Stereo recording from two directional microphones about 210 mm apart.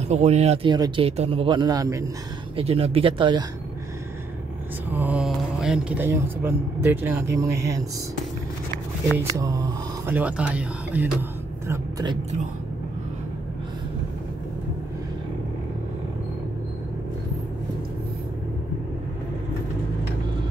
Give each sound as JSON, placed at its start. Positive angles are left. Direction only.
{"t": 0.1, "sound": "speech", "side_deg": -30}
{"t": 2.5, "sound": "speech", "side_deg": -30}
{"t": 4.9, "sound": "a man's voice", "side_deg": -5}
{"t": 10.0, "sound": "a man's voice", "side_deg": -10}